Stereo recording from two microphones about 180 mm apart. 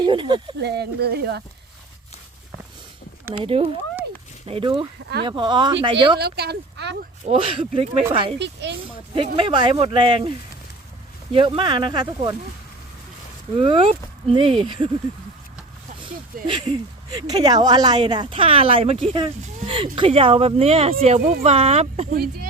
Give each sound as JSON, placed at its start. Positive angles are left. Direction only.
{"t": 0.0, "sound": "speech", "side_deg": -25}
{"t": 0.6, "sound": "speech", "side_deg": -65}
{"t": 3.4, "sound": "speech", "side_deg": -30}
{"t": 6.1, "sound": "speech", "side_deg": -65}
{"t": 7.3, "sound": "speech", "side_deg": -30}
{"t": 8.4, "sound": "speech", "side_deg": -75}
{"t": 8.8, "sound": "speech", "side_deg": -30}
{"t": 13.6, "sound": "speech", "side_deg": -30}
{"t": 16.0, "sound": "speech", "side_deg": -25}
{"t": 22.1, "sound": "speech", "side_deg": -55}